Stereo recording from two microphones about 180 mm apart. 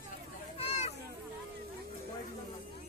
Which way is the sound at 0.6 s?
35° left (ahead or behind).